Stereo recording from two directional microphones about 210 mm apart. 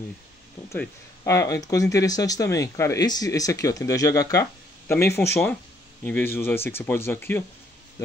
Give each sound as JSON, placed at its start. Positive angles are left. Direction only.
{"t": 0.7, "sound": "speech", "side_deg": 15}